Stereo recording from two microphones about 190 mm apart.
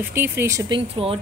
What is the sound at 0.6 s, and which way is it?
Speech, 25° right (ahead or behind).